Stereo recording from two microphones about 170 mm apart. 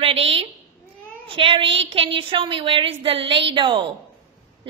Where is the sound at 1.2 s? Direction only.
30° right (ahead or behind).